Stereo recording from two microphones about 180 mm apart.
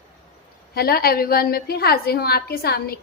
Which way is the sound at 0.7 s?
55° left (ahead or behind).